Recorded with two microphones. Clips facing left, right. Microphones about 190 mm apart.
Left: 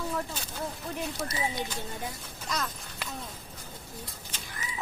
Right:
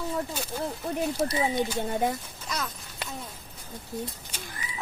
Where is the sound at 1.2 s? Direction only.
30° right (ahead or behind).